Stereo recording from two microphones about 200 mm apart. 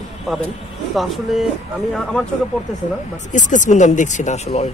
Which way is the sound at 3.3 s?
40° left (ahead or behind).